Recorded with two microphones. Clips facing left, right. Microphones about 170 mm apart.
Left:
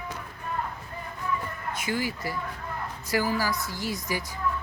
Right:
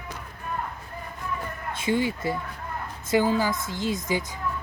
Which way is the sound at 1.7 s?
25° right (ahead or behind).